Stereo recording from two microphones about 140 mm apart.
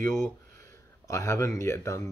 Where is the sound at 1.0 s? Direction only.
20° left (ahead or behind).